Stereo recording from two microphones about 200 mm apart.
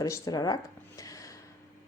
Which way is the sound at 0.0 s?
15° left (ahead or behind).